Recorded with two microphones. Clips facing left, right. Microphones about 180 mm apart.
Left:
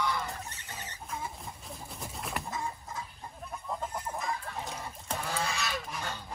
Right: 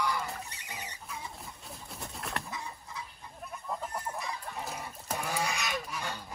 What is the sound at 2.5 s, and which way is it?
Chicken, 45° left (ahead or behind).